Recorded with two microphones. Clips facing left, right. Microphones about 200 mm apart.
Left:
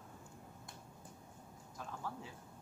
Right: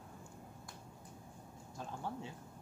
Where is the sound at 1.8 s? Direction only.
30° right (ahead or behind).